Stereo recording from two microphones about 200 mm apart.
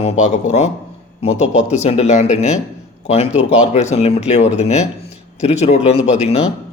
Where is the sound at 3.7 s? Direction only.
35° left (ahead or behind).